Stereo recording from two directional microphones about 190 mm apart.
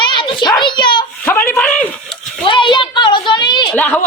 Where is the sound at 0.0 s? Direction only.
25° left (ahead or behind).